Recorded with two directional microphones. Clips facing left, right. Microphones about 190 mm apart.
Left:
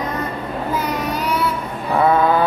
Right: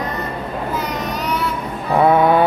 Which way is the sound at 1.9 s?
15° right (ahead or behind).